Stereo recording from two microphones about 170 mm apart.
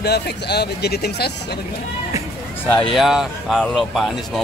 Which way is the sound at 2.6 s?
5° left (ahead or behind).